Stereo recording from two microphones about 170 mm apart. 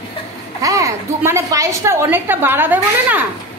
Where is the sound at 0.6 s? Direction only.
20° right (ahead or behind).